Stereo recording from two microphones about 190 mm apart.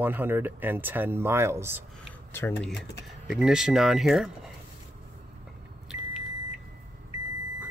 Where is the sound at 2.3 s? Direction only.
10° left (ahead or behind).